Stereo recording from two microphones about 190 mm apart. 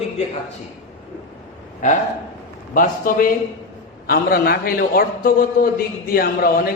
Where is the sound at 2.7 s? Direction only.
45° left (ahead or behind).